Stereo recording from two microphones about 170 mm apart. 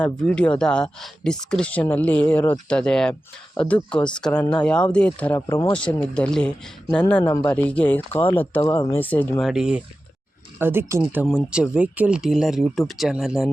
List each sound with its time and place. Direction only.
0.0 s speech: 5° left (ahead or behind)
8.7 s speech: 25° left (ahead or behind)
9.0 s speech: 10° left (ahead or behind)
9.4 s speech: 5° right (ahead or behind)